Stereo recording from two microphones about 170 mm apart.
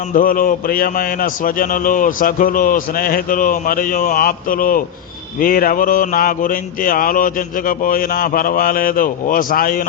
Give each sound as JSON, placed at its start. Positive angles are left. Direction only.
{"t": 0.1, "sound": "a man's voice", "side_deg": 55}